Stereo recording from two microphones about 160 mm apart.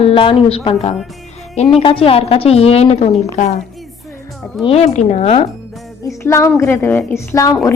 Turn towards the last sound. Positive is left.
turn(degrees=20)  # may be behind; listen again after turning